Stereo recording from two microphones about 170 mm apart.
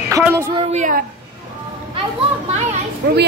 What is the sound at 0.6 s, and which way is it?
Speech, 45° right (ahead or behind).